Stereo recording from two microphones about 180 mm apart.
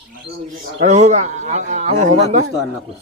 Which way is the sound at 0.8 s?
40° right (ahead or behind).